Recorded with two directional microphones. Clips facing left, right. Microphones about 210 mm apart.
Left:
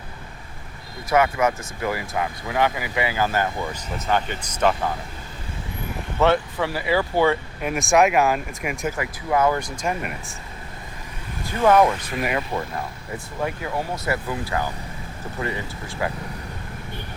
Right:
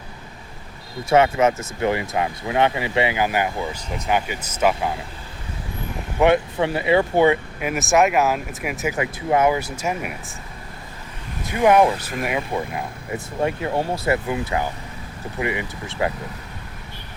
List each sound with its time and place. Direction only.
1.1 s speech: 25° right (ahead or behind); by 4.9 s 10° right (ahead or behind)
6.1 s speech: 15° right (ahead or behind)
7.6 s speech: 5° right (ahead or behind)
9.0 s speech: 20° right (ahead or behind)
9.5 s speech: 5° right (ahead or behind)
11.5 s speech: 15° right (ahead or behind)
12.2 s speech: centre (ahead or behind)
12.5 s speech: 15° right (ahead or behind)
13.4 s speech: 30° right (ahead or behind)